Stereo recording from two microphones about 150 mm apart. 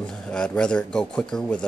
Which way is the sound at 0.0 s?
5° left (ahead or behind).